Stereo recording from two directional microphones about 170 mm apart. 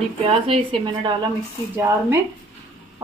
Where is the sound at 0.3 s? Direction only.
30° right (ahead or behind).